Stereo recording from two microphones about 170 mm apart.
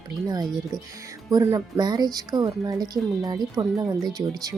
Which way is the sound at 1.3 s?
20° right (ahead or behind).